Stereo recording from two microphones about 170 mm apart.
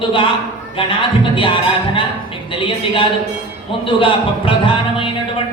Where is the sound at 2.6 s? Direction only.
30° left (ahead or behind).